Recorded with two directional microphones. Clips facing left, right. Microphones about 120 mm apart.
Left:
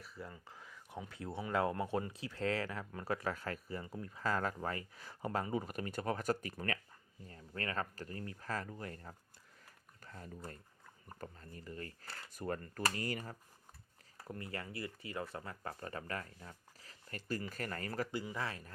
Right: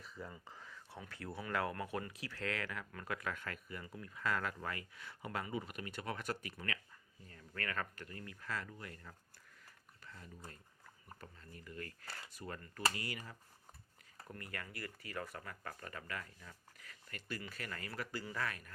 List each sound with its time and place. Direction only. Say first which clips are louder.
0.0 s a sound: even; 5° left (ahead or behind)
0.9 s speech: left 4 dB; 20° left (ahead or behind); by 6.7 s 40° left (ahead or behind)
7.3 s speech: left 2 dB; 30° left (ahead or behind)
12.3 s speech: left 10 dB; 45° left (ahead or behind)
14.3 s speech: left 4 dB; 25° left (ahead or behind)
18.1 s speech: left 2 dB; 20° left (ahead or behind)